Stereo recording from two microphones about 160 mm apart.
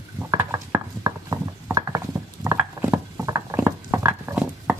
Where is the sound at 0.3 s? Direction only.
20° right (ahead or behind).